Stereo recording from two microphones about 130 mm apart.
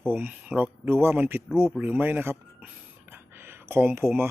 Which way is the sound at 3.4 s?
20° right (ahead or behind).